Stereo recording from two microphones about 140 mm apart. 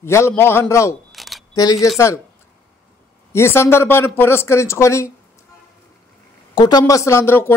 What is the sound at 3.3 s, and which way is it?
Speech, 15° left (ahead or behind).